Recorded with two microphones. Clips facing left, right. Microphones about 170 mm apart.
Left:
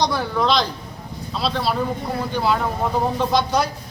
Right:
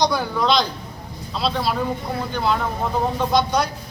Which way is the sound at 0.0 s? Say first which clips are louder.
Even; centre (ahead or behind).